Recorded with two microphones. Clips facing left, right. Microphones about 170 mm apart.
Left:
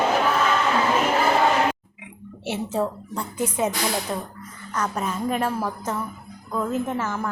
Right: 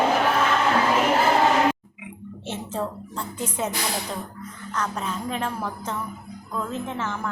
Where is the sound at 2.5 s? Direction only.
10° left (ahead or behind).